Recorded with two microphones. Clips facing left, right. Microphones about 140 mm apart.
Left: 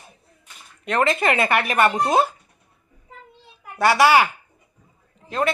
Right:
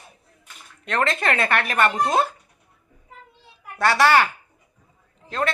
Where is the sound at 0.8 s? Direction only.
5° left (ahead or behind).